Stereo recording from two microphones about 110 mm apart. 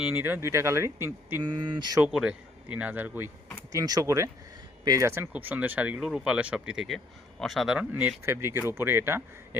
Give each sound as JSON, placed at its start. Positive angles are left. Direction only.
{"t": 0.0, "sound": "speech", "side_deg": -15}
{"t": 1.4, "sound": "speech", "side_deg": -40}
{"t": 2.0, "sound": "a man's voice", "side_deg": -5}
{"t": 3.7, "sound": "a man's voice", "side_deg": -35}
{"t": 7.8, "sound": "a man's voice", "side_deg": -15}